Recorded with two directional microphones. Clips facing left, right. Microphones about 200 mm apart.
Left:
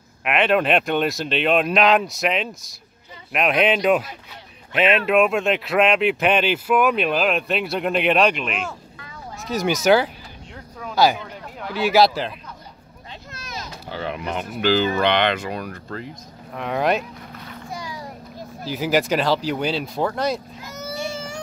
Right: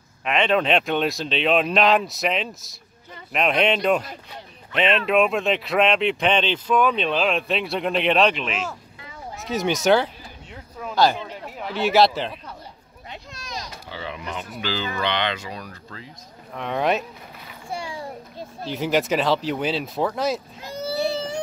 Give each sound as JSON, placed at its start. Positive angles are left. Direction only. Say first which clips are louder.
{"t": 0.2, "sound": "speech", "louder": "left 2 dB", "side_deg": 5}
{"t": 11.6, "sound": "speech", "louder": "left 1 dB", "side_deg": 0}
{"t": 13.3, "sound": "a sound", "louder": "left 1 dB", "side_deg": 5}
{"t": 13.8, "sound": "speech", "louder": "left 8 dB", "side_deg": 50}
{"t": 16.5, "sound": "speech", "louder": "left 1 dB", "side_deg": 0}
{"t": 17.6, "sound": "children playing", "louder": "right 3 dB", "side_deg": -30}
{"t": 18.7, "sound": "speech", "louder": "left 1 dB", "side_deg": 0}
{"t": 20.6, "sound": "baby cry", "louder": "right 8 dB", "side_deg": -30}